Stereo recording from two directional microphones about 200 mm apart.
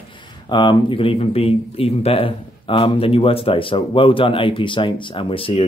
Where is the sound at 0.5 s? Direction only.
25° left (ahead or behind).